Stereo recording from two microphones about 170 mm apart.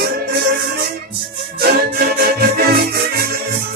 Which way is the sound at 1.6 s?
65° right (ahead or behind).